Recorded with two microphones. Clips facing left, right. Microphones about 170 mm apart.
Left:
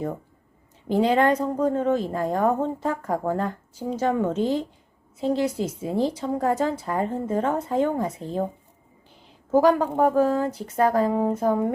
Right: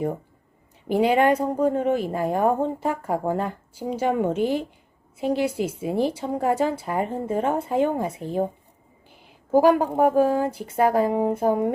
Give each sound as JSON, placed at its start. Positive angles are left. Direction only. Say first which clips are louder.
{"t": 0.9, "sound": "a woman's voice", "louder": "right 1 dB", "side_deg": -10}
{"t": 9.0, "sound": "a sound", "louder": "right 1 dB", "side_deg": -10}
{"t": 10.0, "sound": "a woman's voice", "louder": "even", "side_deg": -15}